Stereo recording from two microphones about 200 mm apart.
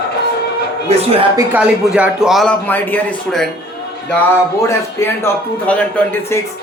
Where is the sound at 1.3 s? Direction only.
10° right (ahead or behind).